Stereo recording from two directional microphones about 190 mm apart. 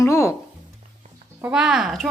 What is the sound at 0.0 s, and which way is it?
Music, 15° left (ahead or behind).